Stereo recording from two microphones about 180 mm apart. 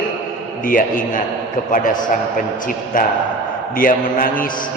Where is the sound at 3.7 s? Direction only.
50° left (ahead or behind).